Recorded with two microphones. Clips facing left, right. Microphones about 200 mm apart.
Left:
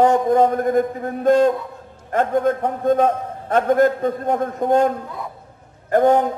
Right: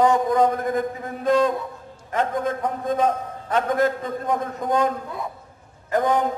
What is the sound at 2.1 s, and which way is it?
A man's voice, 50° left (ahead or behind).